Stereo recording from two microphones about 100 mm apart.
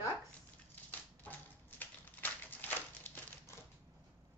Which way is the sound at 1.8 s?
20° left (ahead or behind).